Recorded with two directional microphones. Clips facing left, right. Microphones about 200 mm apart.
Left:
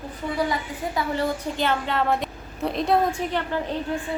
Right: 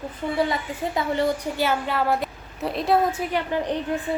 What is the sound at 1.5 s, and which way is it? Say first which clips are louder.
A woman's voice: right 1 dB; 5° right (ahead or behind).